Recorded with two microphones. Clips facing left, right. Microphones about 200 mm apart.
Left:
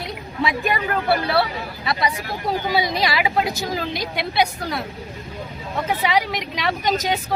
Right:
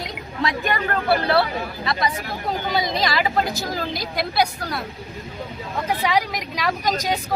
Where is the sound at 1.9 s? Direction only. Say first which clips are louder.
Left 2 dB; 5° left (ahead or behind).